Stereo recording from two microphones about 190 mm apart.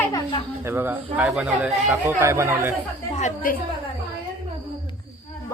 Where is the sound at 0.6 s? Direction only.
10° right (ahead or behind).